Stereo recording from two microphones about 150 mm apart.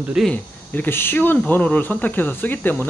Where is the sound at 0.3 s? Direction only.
10° left (ahead or behind).